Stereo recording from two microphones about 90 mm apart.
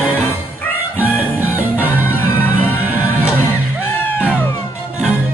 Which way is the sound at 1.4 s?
20° right (ahead or behind).